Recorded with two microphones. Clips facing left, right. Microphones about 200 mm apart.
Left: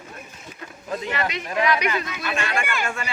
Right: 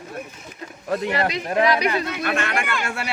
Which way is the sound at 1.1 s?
35° right (ahead or behind).